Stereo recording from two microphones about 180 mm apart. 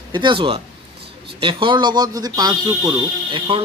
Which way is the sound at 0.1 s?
25° right (ahead or behind).